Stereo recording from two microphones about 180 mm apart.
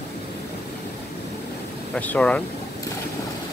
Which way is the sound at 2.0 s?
10° left (ahead or behind).